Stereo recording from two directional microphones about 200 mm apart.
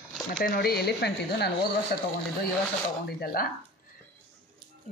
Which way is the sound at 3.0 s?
50° left (ahead or behind).